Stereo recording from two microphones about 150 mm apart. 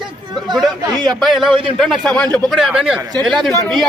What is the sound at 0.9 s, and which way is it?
Speech, 25° right (ahead or behind).